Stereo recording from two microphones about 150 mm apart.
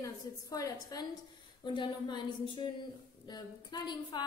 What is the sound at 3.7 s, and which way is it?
Speech, 30° left (ahead or behind).